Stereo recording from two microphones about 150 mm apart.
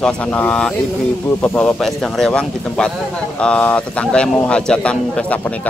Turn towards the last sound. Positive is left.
turn(degrees=5)  # may be behind; listen again after turning